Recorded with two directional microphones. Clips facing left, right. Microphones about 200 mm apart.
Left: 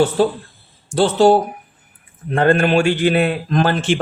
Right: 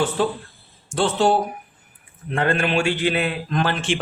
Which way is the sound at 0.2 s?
35° left (ahead or behind).